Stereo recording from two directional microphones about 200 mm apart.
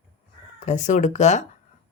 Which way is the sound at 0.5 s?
40° left (ahead or behind).